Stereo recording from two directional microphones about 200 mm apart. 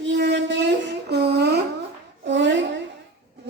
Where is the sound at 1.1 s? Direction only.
55° right (ahead or behind).